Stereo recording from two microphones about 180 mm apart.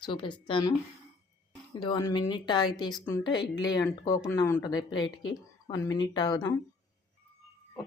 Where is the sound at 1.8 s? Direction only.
25° left (ahead or behind).